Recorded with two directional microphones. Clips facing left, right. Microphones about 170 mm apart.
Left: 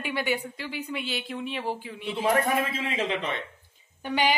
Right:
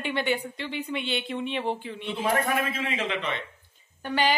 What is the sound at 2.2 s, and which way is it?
A man's voice, 30° left (ahead or behind).